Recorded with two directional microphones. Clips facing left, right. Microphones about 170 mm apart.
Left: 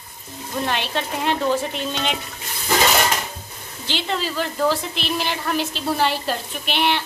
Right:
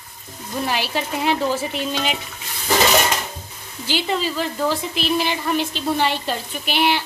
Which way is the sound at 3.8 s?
5° right (ahead or behind).